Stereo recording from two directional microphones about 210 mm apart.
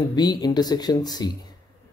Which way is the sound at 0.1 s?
20° left (ahead or behind).